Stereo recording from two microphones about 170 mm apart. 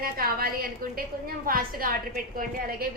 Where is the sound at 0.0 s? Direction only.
60° right (ahead or behind).